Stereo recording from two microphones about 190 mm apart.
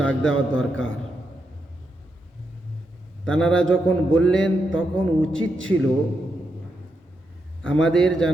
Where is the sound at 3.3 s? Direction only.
5° left (ahead or behind).